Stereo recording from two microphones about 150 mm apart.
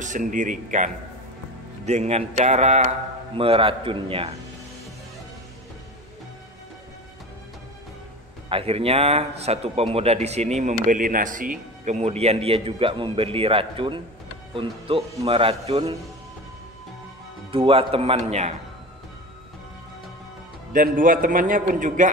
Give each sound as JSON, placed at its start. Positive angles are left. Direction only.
{"t": 0.0, "sound": "a man's voice", "side_deg": -60}
{"t": 1.9, "sound": "speech", "side_deg": -45}
{"t": 3.3, "sound": "a man's voice", "side_deg": -40}
{"t": 8.5, "sound": "a man's voice", "side_deg": -40}
{"t": 17.5, "sound": "a man's voice", "side_deg": -35}
{"t": 20.7, "sound": "a man's voice", "side_deg": -65}